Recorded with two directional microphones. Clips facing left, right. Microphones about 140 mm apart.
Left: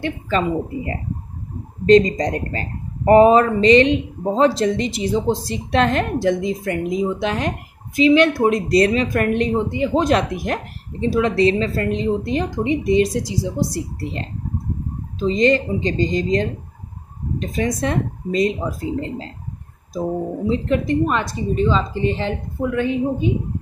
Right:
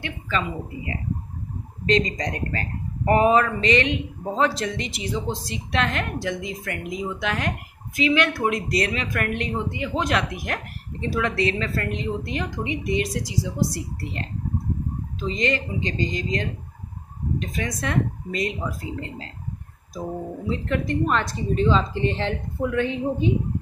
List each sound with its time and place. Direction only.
0.0 s a woman's voice: 40° left (ahead or behind); by 23.3 s 5° left (ahead or behind)